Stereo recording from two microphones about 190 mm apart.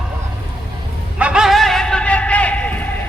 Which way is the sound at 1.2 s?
5° right (ahead or behind).